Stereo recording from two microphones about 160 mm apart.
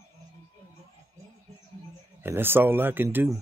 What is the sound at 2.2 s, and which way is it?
Speech, 15° right (ahead or behind).